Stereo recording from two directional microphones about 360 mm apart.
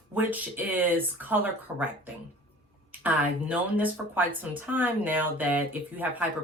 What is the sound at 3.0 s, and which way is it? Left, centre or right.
Speech, centre.